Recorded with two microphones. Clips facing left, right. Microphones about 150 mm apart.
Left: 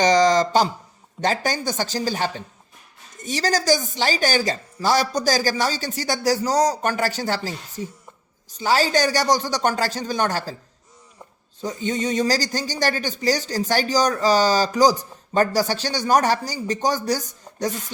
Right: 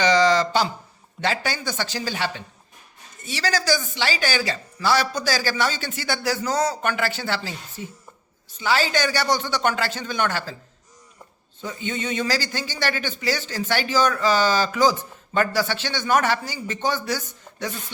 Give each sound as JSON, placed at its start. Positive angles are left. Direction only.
{"t": 0.0, "sound": "a sound", "side_deg": 45}
{"t": 1.2, "sound": "speech", "side_deg": 45}
{"t": 11.6, "sound": "speech", "side_deg": 40}